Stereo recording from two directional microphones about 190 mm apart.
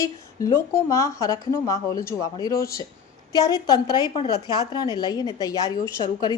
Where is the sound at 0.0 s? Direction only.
15° left (ahead or behind).